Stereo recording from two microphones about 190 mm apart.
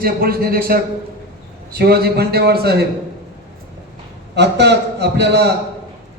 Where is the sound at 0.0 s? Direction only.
50° right (ahead or behind).